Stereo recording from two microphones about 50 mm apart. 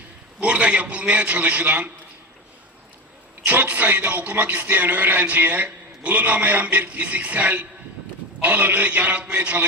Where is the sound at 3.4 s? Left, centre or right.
Right.